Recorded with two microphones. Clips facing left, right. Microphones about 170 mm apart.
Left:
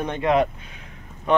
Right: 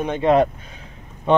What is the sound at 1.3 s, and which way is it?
Speech, 25° right (ahead or behind).